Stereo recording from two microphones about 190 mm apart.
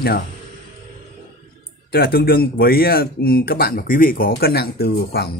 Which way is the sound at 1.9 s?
55° left (ahead or behind).